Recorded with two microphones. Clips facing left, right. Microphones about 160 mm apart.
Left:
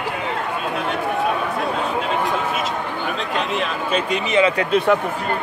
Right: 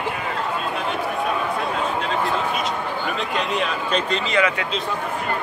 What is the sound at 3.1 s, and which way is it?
Speech, centre (ahead or behind).